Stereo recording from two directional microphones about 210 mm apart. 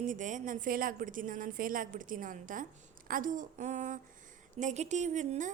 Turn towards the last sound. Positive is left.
turn(degrees=-35)  # may be behind; listen again after turning